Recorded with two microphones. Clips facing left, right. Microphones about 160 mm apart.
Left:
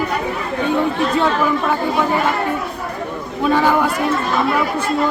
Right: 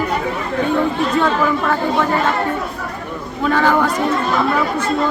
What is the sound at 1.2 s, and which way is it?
Speech, 15° left (ahead or behind).